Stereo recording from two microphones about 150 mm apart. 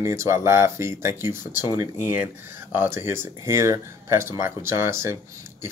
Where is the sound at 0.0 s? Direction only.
20° right (ahead or behind).